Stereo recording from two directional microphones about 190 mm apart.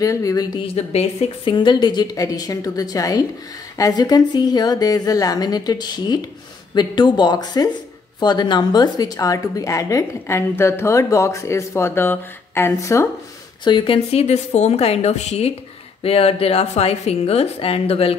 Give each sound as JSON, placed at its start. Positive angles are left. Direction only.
{"t": 0.0, "sound": "a woman's voice", "side_deg": 15}
{"t": 13.7, "sound": "speech", "side_deg": 25}